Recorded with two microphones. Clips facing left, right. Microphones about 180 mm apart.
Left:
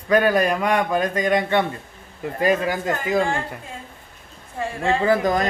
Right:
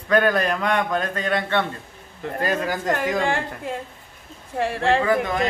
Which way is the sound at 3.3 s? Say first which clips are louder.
Right 2 dB; 75° right (ahead or behind).